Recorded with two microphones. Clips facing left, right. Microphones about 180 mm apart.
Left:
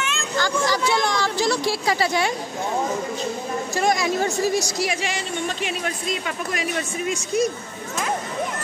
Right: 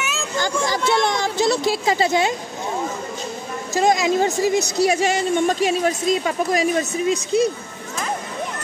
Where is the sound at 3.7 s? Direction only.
20° right (ahead or behind).